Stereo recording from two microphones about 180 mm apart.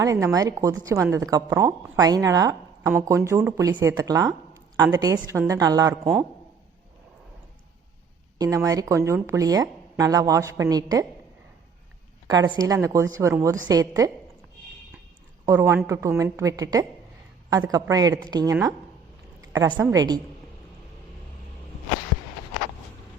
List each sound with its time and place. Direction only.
0.0 s a woman's voice: 20° right (ahead or behind)
8.4 s a woman's voice: 20° right (ahead or behind)
12.5 s a woman's voice: 20° right (ahead or behind)
15.4 s a woman's voice: 15° right (ahead or behind)